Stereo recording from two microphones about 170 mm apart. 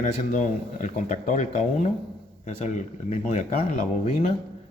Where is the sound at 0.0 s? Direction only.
45° left (ahead or behind).